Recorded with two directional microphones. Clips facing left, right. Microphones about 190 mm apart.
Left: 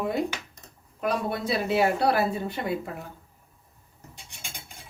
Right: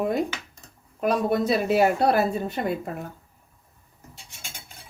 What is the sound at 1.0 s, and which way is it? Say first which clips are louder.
Speech: right 5 dB; 45° right (ahead or behind).